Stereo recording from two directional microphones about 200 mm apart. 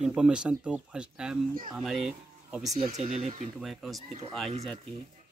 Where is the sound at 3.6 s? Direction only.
Centre (ahead or behind).